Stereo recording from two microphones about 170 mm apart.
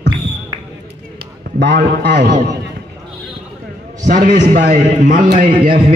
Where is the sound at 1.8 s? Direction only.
70° right (ahead or behind).